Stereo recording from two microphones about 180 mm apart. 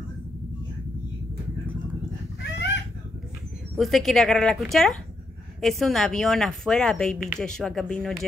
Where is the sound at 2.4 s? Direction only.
70° left (ahead or behind).